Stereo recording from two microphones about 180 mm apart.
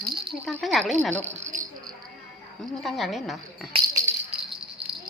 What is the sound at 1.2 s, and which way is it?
Speech, 40° right (ahead or behind).